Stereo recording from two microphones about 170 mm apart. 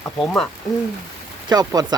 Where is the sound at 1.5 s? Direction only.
25° right (ahead or behind).